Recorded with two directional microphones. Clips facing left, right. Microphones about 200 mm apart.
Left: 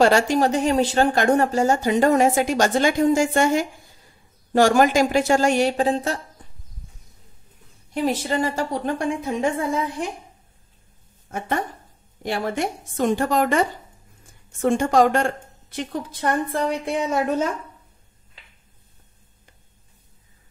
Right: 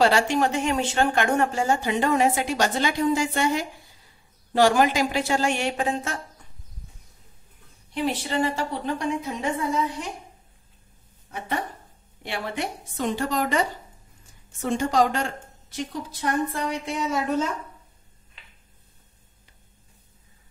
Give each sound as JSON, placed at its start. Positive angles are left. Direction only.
{"t": 0.0, "sound": "speech", "side_deg": 40}
{"t": 7.9, "sound": "speech", "side_deg": 40}
{"t": 11.2, "sound": "speech", "side_deg": 45}